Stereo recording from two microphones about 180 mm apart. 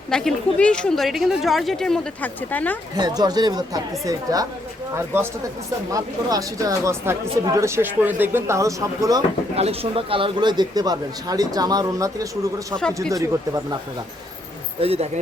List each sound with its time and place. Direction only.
0.1 s a woman's voice: 5° left (ahead or behind)
2.9 s speech: 20° right (ahead or behind)
9.6 s speech: 35° right (ahead or behind); by 13.7 s 20° right (ahead or behind)
14.8 s speech: 35° right (ahead or behind)